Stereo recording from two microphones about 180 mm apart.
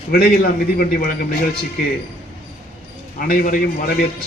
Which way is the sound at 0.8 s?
55° left (ahead or behind).